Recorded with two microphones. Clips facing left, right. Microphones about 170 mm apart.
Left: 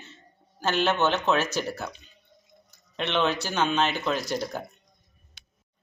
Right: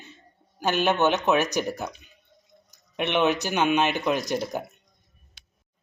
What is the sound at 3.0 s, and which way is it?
Speech, 15° right (ahead or behind).